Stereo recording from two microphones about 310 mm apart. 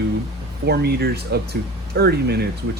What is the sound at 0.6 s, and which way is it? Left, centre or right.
Speech, right.